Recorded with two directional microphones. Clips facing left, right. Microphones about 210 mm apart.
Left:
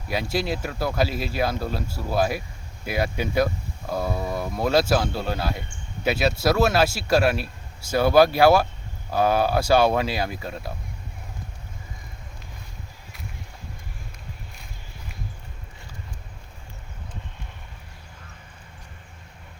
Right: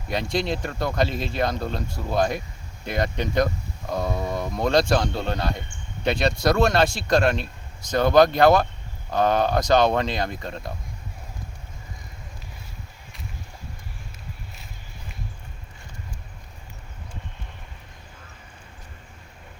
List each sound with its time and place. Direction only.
0.1 s speech: 5° left (ahead or behind)